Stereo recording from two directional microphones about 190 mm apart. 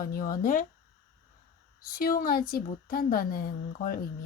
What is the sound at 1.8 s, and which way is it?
Speech, 50° left (ahead or behind).